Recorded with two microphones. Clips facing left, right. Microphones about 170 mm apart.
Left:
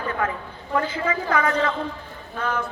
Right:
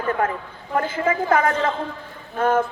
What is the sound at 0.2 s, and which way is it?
A woman's voice, 50° right (ahead or behind).